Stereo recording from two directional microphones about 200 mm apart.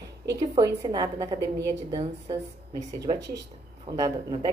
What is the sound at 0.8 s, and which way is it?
A woman's voice, 20° right (ahead or behind).